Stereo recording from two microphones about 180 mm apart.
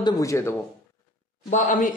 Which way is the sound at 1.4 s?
45° left (ahead or behind).